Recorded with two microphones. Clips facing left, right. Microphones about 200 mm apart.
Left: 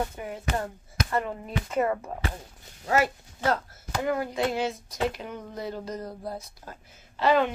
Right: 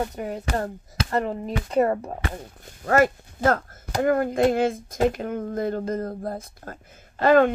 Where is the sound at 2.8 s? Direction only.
50° right (ahead or behind).